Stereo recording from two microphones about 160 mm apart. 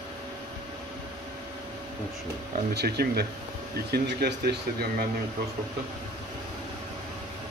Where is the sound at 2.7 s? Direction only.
90° right.